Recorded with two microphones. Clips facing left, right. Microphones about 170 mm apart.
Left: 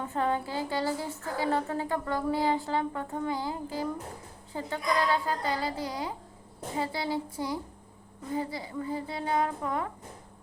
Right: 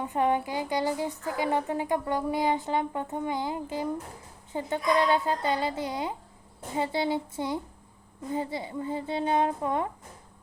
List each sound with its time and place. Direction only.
0.0 s a woman's voice: 15° right (ahead or behind)